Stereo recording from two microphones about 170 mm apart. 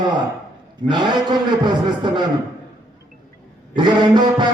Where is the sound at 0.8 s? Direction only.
25° right (ahead or behind).